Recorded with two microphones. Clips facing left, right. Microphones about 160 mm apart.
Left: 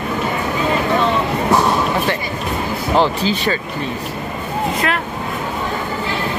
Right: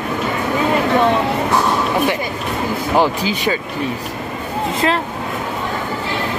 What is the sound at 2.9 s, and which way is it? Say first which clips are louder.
Speech: left 1 dB; 10° right (ahead or behind).